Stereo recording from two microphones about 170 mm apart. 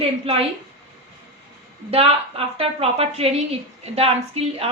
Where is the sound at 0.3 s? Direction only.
35° right (ahead or behind).